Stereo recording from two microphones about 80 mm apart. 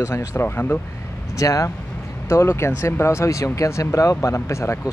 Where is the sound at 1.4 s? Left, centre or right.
Left.